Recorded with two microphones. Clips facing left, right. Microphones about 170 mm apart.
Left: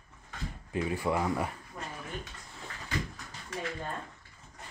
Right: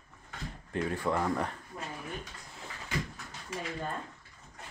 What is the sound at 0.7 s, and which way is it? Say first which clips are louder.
Speech: left 1 dB; 5° left (ahead or behind).